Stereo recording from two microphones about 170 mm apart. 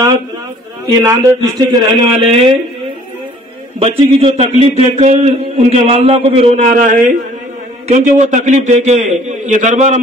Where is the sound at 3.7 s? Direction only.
35° right (ahead or behind).